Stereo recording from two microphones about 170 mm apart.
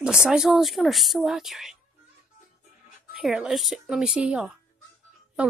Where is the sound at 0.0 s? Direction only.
5° right (ahead or behind).